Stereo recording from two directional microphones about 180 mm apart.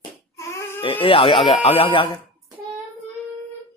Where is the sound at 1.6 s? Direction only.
30° left (ahead or behind).